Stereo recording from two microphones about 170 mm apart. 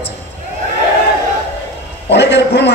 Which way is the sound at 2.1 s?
85° left.